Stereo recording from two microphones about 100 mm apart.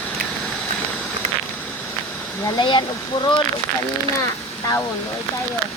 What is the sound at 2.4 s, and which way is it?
Speech, 45° left (ahead or behind).